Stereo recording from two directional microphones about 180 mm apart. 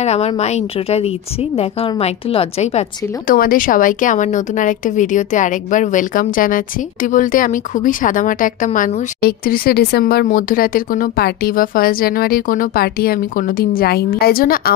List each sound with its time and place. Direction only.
0.0 s a woman's voice: 35° left (ahead or behind)
3.3 s a woman's voice: 50° left (ahead or behind)